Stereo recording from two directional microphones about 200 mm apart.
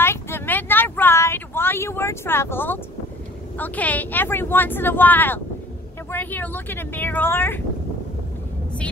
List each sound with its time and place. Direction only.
0.0 s vehicle: 10° left (ahead or behind)
3.5 s speech: 10° left (ahead or behind)